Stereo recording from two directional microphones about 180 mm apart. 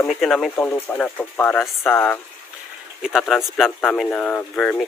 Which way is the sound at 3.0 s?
Centre (ahead or behind).